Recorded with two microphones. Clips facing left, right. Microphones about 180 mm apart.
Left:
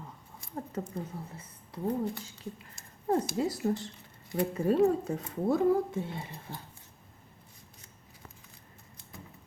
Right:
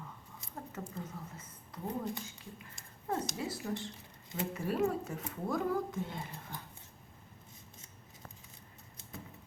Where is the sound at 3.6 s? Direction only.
45° left (ahead or behind); by 5.9 s 25° left (ahead or behind).